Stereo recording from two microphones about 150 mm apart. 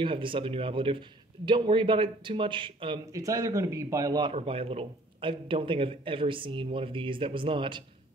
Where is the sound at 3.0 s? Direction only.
20° right (ahead or behind).